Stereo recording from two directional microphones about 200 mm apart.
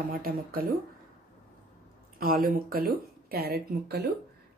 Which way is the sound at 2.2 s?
45° right (ahead or behind).